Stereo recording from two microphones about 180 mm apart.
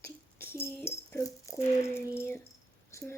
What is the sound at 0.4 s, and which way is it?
Tambourine, 15° left (ahead or behind).